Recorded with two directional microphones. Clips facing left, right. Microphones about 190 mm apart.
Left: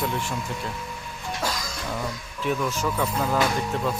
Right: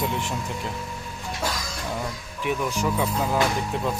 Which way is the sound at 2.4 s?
15° right (ahead or behind).